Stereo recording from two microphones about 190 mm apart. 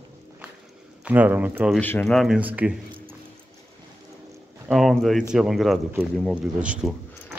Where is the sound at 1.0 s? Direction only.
10° right (ahead or behind).